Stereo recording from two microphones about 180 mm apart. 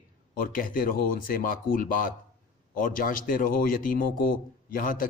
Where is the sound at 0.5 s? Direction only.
50° left (ahead or behind).